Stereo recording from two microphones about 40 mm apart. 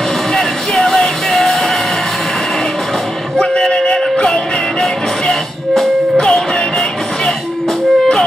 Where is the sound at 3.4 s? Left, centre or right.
Centre.